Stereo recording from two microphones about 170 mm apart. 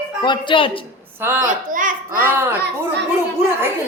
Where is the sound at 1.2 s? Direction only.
15° right (ahead or behind).